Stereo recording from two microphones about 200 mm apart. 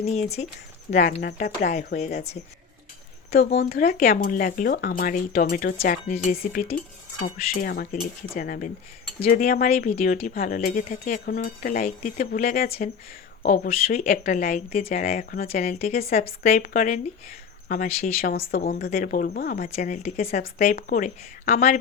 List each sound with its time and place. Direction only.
0.0 s speech: 30° left (ahead or behind)
3.3 s speech: 50° left (ahead or behind)
15.4 s speech: 35° left (ahead or behind)
19.7 s speech: 35° left (ahead or behind)